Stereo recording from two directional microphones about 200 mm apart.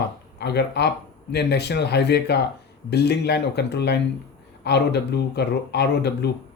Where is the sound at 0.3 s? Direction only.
55° left (ahead or behind).